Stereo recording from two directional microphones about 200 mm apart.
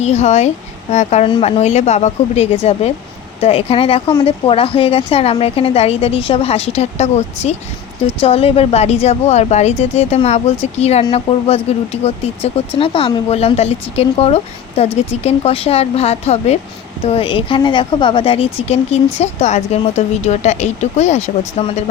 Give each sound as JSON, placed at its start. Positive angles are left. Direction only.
{"t": 0.0, "sound": "speech", "side_deg": 35}